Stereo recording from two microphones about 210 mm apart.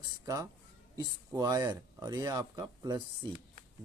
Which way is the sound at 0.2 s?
15° right (ahead or behind).